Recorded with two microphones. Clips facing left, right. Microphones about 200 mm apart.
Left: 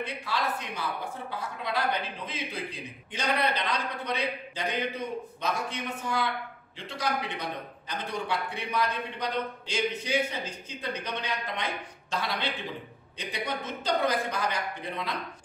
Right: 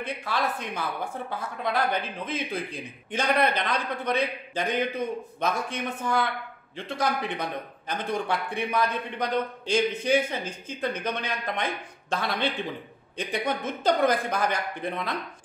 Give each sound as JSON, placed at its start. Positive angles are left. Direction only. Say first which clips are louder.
{"t": 0.0, "sound": "a man's voice", "louder": "right 2 dB", "side_deg": -50}